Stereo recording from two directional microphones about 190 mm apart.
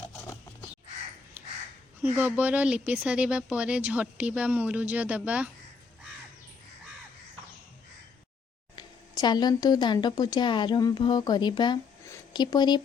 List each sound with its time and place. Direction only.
2.1 s speech: 10° right (ahead or behind)
8.7 s speech: 25° left (ahead or behind)